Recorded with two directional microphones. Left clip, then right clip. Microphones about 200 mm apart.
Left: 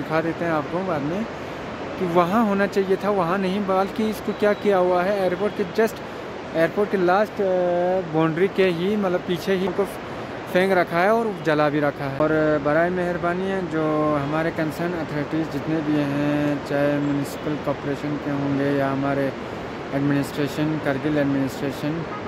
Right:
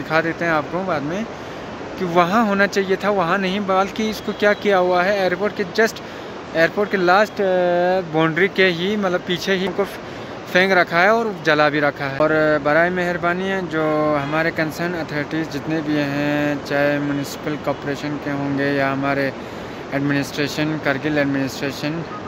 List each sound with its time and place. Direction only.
0.1 s speech: 5° right (ahead or behind)
8.4 s speech: centre (ahead or behind)
18.6 s speech: 10° right (ahead or behind)